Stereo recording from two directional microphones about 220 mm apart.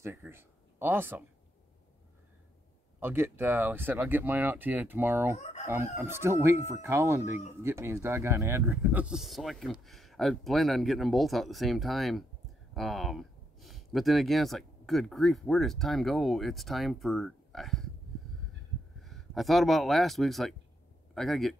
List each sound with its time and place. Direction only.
0.0 s speech: 10° right (ahead or behind)
3.0 s speech: 10° right (ahead or behind)
5.4 s speech: 30° left (ahead or behind)
5.9 s speech: 10° right (ahead or behind)
18.9 s speech: centre (ahead or behind)